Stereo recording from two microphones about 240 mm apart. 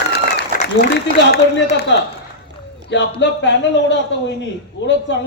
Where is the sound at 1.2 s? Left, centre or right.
Left.